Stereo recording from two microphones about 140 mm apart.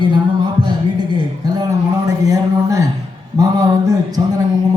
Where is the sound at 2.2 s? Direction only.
25° right (ahead or behind).